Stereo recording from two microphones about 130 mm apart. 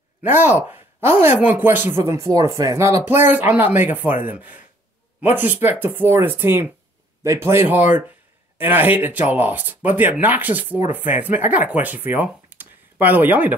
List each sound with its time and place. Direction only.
0.2 s speech: 15° right (ahead or behind)